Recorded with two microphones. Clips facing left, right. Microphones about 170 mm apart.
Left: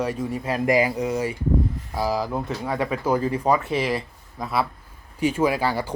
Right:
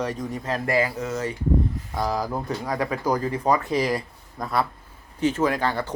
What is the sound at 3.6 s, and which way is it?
Speech, 25° left (ahead or behind).